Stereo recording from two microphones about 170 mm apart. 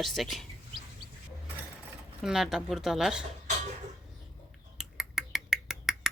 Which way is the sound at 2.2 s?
5° right (ahead or behind).